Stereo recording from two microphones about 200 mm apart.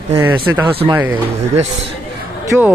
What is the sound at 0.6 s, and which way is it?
Speech, 25° right (ahead or behind).